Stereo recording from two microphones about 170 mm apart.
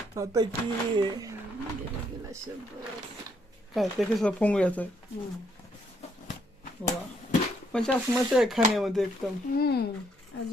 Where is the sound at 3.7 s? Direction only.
Centre (ahead or behind).